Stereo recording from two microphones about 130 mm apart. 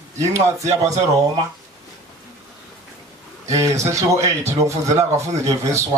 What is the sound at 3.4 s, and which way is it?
Speech, 25° right (ahead or behind).